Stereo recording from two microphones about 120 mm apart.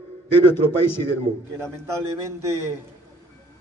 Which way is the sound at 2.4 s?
25° right (ahead or behind).